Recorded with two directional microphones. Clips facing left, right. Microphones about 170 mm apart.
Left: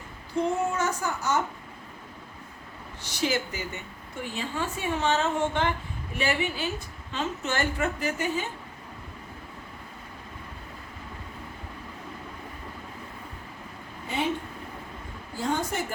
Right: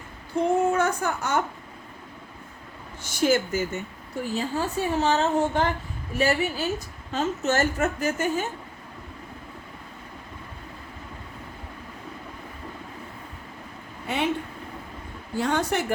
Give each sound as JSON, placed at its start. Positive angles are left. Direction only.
{"t": 0.7, "sound": "speech", "side_deg": -55}
{"t": 3.0, "sound": "a woman's voice", "side_deg": -50}
{"t": 14.1, "sound": "a woman's voice", "side_deg": -70}
{"t": 15.4, "sound": "a woman's voice", "side_deg": -70}